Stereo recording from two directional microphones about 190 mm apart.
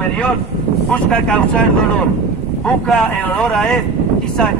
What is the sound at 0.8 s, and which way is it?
A woman's voice, 5° left (ahead or behind).